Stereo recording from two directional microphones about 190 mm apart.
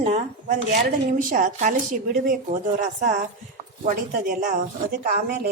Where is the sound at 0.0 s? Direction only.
35° right (ahead or behind).